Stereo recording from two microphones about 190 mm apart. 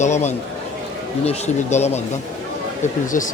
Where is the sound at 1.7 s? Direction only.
35° left (ahead or behind).